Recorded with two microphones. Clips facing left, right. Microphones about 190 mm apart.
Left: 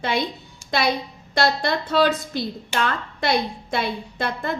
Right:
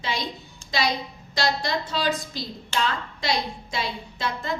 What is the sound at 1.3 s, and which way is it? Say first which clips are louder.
A woman's voice: left 4 dB; 55° left (ahead or behind).